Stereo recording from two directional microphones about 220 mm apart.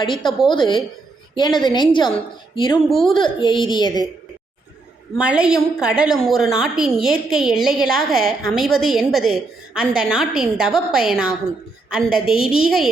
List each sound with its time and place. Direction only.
0.0 s a woman's voice: 20° left (ahead or behind)
5.1 s a woman's voice: 5° right (ahead or behind)